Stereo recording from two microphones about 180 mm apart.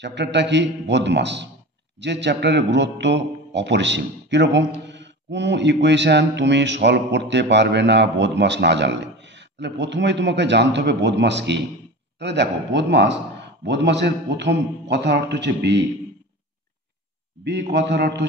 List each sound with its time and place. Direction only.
0.0 s speech: 75° right (ahead or behind)
17.5 s a man's voice: 65° right (ahead or behind)